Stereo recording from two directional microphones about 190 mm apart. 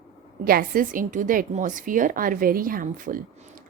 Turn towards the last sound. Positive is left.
turn(degrees=-45)  # may be behind; listen again after turning